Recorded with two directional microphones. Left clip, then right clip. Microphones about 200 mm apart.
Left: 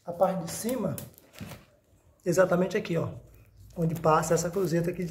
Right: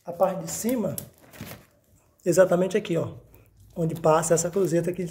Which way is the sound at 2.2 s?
30° right (ahead or behind).